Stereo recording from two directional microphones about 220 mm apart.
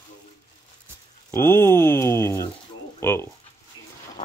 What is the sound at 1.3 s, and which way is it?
Speech, 10° left (ahead or behind).